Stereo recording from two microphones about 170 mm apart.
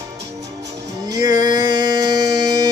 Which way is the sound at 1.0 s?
25° right (ahead or behind).